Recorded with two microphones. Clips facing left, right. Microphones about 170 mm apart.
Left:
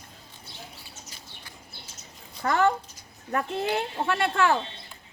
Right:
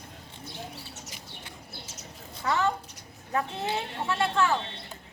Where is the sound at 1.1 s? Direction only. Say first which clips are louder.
Right 3 dB; 20° right (ahead or behind).